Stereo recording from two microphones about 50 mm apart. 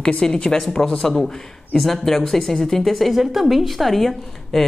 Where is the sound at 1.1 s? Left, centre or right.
Centre.